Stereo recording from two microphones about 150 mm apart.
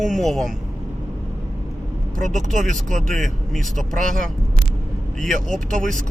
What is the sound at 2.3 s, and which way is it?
Speech, centre (ahead or behind).